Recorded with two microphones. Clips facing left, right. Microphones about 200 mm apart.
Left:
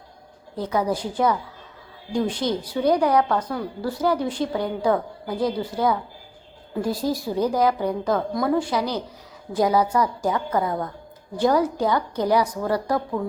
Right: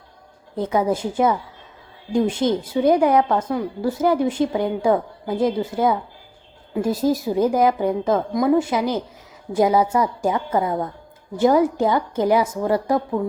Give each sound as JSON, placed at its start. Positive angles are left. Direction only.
{"t": 0.5, "sound": "a woman's voice", "side_deg": -20}